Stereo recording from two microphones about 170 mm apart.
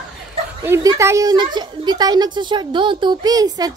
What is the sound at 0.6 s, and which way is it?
A woman's voice, 15° right (ahead or behind).